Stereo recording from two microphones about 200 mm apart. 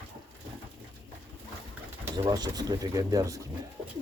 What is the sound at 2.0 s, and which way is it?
Speech, 20° right (ahead or behind).